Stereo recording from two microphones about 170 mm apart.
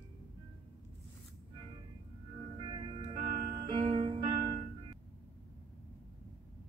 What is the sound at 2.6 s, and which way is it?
Music, 30° right (ahead or behind).